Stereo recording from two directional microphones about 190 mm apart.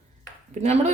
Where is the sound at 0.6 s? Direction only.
35° right (ahead or behind).